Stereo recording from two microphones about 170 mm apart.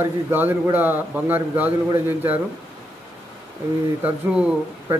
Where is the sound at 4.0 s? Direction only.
5° right (ahead or behind).